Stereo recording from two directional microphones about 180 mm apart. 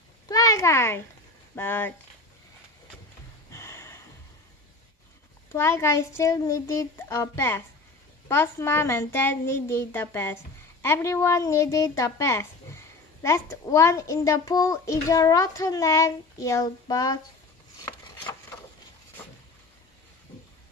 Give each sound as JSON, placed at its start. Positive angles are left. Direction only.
{"t": 0.3, "sound": "a child's voice", "side_deg": 20}
{"t": 3.5, "sound": "a sound", "side_deg": 15}
{"t": 5.5, "sound": "a child's voice", "side_deg": 15}